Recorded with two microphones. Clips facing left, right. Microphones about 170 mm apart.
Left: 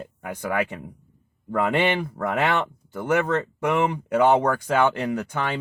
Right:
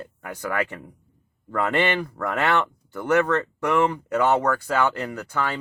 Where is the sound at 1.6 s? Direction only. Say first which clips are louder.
Even; 15° left (ahead or behind).